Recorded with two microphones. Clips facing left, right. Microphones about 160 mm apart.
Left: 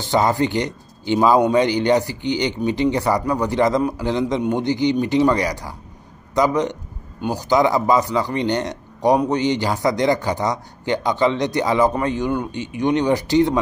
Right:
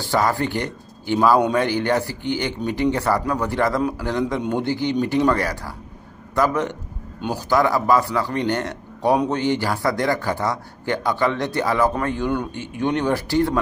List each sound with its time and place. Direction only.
0.0 s a man's voice: 20° left (ahead or behind)